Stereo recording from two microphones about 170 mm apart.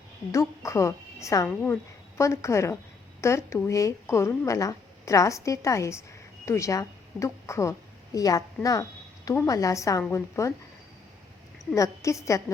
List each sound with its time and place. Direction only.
0.3 s a woman's voice: 15° left (ahead or behind)
11.7 s a woman's voice: 20° left (ahead or behind)